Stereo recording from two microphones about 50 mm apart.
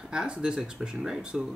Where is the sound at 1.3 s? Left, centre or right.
Centre.